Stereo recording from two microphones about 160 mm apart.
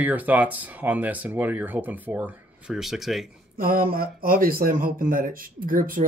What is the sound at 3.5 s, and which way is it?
Speech, 65° right (ahead or behind).